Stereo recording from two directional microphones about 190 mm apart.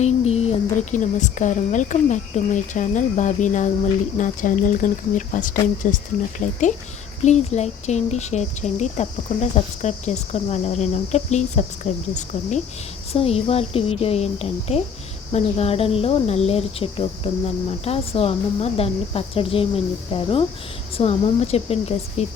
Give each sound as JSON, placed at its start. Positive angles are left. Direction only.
{"t": 0.0, "sound": "speech", "side_deg": 35}